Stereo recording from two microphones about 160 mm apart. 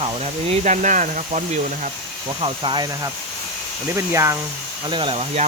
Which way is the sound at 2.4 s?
30° right (ahead or behind).